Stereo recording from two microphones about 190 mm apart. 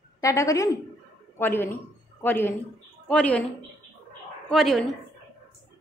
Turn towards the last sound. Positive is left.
turn(degrees=0)  # may be behind; listen again after turning